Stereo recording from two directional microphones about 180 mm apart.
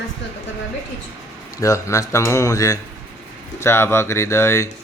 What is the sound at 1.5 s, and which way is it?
A man's voice, 15° left (ahead or behind).